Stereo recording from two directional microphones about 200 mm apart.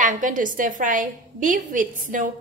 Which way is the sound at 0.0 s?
40° right (ahead or behind).